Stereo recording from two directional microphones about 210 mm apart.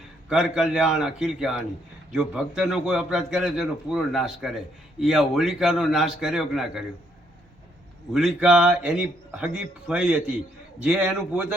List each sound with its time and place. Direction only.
0.3 s a man's voice: centre (ahead or behind)
8.1 s a man's voice: centre (ahead or behind)